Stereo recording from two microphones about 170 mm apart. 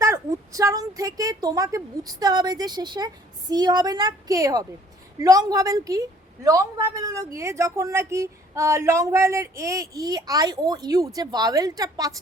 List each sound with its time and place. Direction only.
0.0 s a woman's voice: 20° right (ahead or behind)